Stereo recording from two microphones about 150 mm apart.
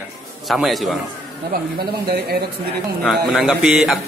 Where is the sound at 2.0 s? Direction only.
90° right.